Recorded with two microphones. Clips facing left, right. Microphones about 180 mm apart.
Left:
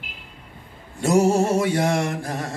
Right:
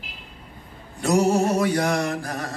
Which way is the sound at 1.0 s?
25° left (ahead or behind).